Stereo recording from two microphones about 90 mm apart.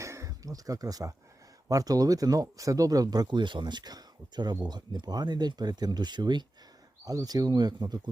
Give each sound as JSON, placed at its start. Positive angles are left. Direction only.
{"t": 0.0, "sound": "a sound", "side_deg": -35}
{"t": 1.6, "sound": "speech", "side_deg": -40}
{"t": 7.0, "sound": "speech", "side_deg": -45}